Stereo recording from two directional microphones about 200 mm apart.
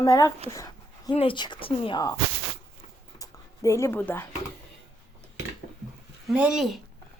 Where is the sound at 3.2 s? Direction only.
15° left (ahead or behind).